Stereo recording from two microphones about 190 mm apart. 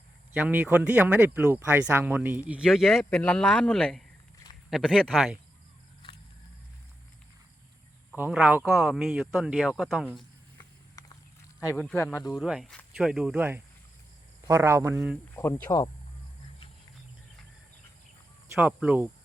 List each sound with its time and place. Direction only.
0.3 s speech: 10° right (ahead or behind)
8.1 s speech: 5° right (ahead or behind)
10.6 s a sound: 20° left (ahead or behind)
11.8 s speech: 5° left (ahead or behind)
12.3 s speech: centre (ahead or behind)
15.4 s speech: 15° left (ahead or behind)
18.5 s speech: 10° right (ahead or behind)